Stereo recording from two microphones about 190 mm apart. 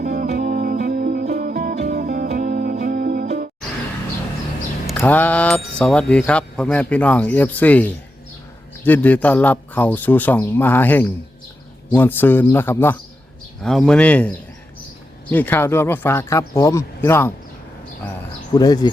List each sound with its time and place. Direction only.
0.0 s music: 45° right (ahead or behind)
4.9 s speech: 10° left (ahead or behind)
18.5 s speech: 20° left (ahead or behind)